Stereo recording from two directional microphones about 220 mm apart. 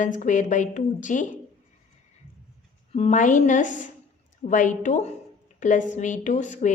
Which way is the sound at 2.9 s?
30° left (ahead or behind).